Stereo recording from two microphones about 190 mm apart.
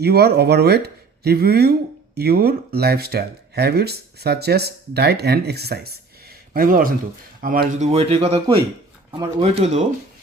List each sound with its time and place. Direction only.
0.0 s speech: 55° right (ahead or behind); by 9.8 s 35° right (ahead or behind)